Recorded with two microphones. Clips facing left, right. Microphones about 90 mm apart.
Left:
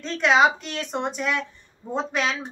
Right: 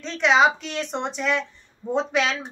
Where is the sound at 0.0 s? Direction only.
Centre (ahead or behind).